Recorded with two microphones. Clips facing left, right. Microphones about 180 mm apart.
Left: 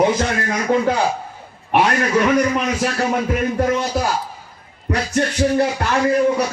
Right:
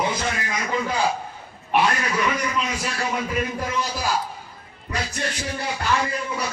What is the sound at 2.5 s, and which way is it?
Speech, 60° left (ahead or behind).